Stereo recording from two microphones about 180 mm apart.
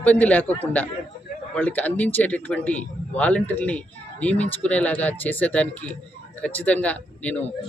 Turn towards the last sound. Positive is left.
turn(degrees=10)  # may be behind; listen again after turning